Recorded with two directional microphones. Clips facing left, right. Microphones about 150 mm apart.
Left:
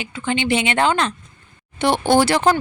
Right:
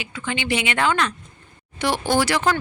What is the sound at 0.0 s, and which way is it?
Speech, 25° left (ahead or behind).